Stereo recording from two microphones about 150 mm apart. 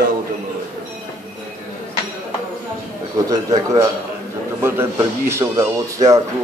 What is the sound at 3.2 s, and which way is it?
Speech, 25° right (ahead or behind).